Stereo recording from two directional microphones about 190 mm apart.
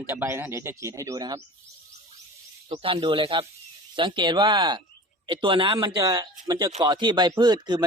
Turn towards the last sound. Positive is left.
turn(degrees=-25)  # may be behind; listen again after turning